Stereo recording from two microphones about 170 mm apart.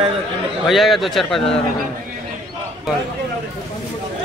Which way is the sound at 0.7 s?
Centre (ahead or behind).